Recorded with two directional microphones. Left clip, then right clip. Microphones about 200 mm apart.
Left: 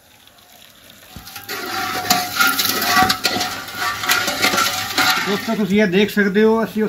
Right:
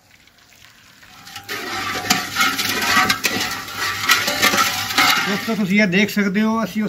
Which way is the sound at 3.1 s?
5° right (ahead or behind).